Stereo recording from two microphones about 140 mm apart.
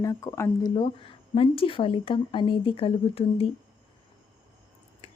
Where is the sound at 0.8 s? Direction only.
40° left (ahead or behind).